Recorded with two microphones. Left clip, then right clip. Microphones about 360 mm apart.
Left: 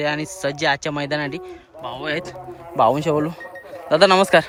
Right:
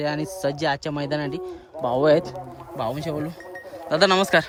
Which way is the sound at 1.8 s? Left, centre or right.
Centre.